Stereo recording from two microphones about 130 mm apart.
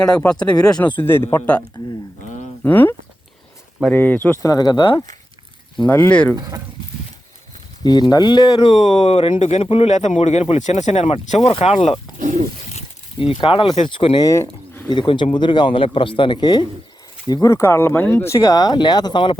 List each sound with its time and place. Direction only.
0.0 s speech: 5° left (ahead or behind)
0.9 s speech: 15° left (ahead or behind)
2.6 s speech: 15° left (ahead or behind)
3.9 s speech: 15° left (ahead or behind)
4.4 s a man's voice: 30° left (ahead or behind)
5.7 s speech: 10° left (ahead or behind)
6.3 s speech: 30° right (ahead or behind)
7.9 s a man's voice: 30° left (ahead or behind)
8.6 s a man's voice: 50° left (ahead or behind)